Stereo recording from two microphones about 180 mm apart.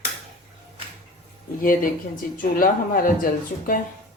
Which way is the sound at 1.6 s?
50° left (ahead or behind).